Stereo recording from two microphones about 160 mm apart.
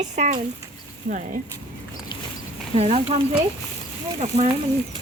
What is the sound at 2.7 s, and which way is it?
Speech, 40° right (ahead or behind).